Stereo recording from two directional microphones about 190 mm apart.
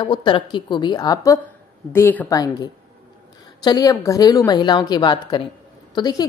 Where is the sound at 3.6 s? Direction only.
20° left (ahead or behind).